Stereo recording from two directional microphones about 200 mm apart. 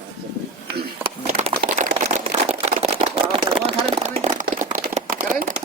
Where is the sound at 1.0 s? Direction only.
35° right (ahead or behind).